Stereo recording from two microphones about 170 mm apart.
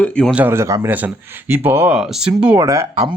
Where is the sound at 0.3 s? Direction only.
15° right (ahead or behind).